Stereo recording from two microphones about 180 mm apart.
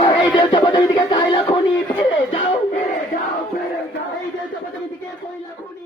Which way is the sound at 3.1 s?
50° left (ahead or behind).